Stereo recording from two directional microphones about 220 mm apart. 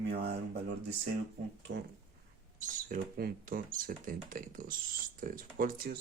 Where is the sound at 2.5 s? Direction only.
40° right (ahead or behind).